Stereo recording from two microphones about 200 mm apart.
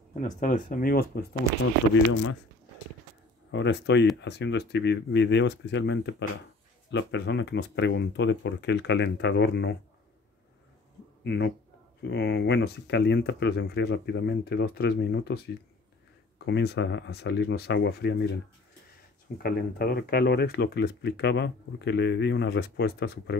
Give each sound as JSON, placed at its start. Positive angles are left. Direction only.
{"t": 0.2, "sound": "speech", "side_deg": 40}
{"t": 3.5, "sound": "speech", "side_deg": 60}
{"t": 11.2, "sound": "speech", "side_deg": 60}
{"t": 19.3, "sound": "speech", "side_deg": 50}